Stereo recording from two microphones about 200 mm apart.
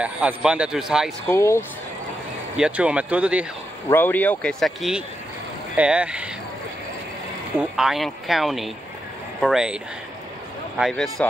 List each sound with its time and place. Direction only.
0.0 s a man's voice: 5° right (ahead or behind)
1.3 s speech: 15° left (ahead or behind)
2.5 s a man's voice: 5° right (ahead or behind)
3.9 s a man's voice: 10° left (ahead or behind); by 6.3 s 5° right (ahead or behind)
7.5 s a man's voice: centre (ahead or behind)
10.8 s a man's voice: centre (ahead or behind)